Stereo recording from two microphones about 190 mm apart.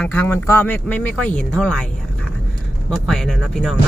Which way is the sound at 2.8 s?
5° left (ahead or behind).